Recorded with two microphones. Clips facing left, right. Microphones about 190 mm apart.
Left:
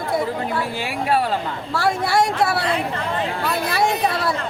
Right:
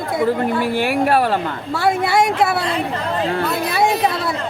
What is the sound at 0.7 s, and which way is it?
Speech, 60° right (ahead or behind).